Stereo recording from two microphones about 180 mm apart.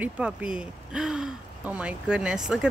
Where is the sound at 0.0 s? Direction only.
5° right (ahead or behind).